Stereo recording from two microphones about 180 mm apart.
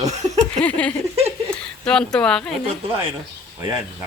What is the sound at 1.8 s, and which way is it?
Speech, 5° left (ahead or behind).